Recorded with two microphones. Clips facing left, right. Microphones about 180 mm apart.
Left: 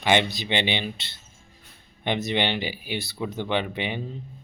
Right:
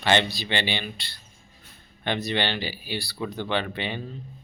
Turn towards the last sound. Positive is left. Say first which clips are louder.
# left 1 dB
turn(degrees=15)  # may be behind; listen again after turning